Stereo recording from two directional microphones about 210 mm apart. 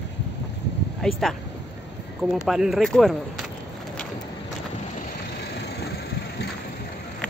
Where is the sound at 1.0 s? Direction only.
5° left (ahead or behind).